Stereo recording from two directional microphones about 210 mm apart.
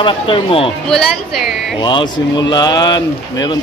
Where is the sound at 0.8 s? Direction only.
Centre (ahead or behind).